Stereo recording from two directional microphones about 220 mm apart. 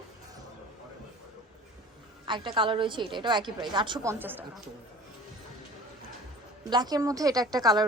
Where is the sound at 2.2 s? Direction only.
20° right (ahead or behind).